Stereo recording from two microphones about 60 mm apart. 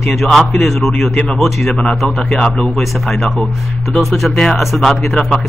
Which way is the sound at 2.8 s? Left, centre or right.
Centre.